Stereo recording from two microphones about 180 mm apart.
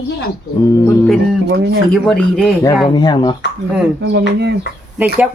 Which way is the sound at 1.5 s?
60° right (ahead or behind).